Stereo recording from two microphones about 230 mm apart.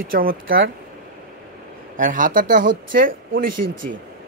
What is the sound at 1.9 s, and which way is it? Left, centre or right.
Speech, right.